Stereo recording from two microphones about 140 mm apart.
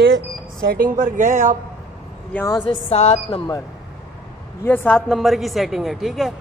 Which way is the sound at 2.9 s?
45° left (ahead or behind).